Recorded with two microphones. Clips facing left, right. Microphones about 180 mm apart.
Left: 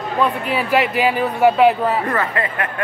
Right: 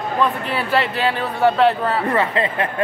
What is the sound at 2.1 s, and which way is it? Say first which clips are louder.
Speech: right 2 dB; 20° right (ahead or behind).